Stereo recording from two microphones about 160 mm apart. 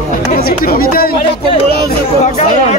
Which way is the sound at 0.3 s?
65° left (ahead or behind).